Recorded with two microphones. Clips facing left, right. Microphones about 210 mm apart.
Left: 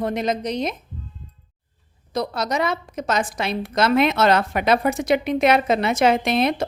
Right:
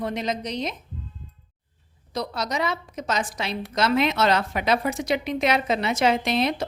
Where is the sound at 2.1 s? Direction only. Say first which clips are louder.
Left 4 dB; 50° left (ahead or behind).